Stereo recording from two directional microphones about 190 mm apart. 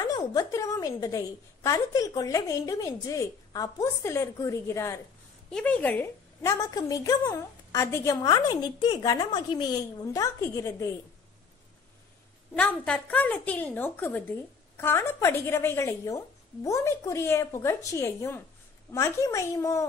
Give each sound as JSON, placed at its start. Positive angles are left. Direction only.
{"t": 0.0, "sound": "a woman's voice", "side_deg": 20}
{"t": 12.5, "sound": "a woman's voice", "side_deg": 5}